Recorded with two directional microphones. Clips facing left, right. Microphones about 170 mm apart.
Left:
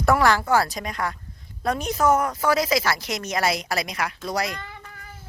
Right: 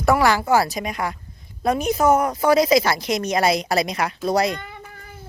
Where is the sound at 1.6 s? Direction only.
10° right (ahead or behind).